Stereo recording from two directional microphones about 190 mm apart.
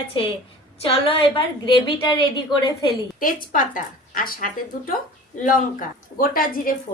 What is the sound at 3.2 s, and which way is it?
Speech, 45° left (ahead or behind).